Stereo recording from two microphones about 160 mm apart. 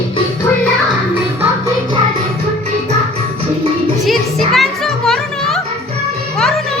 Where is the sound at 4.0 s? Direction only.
Centre (ahead or behind).